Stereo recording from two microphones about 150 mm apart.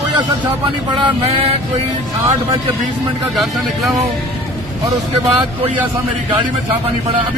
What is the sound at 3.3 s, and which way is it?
Speech, centre (ahead or behind).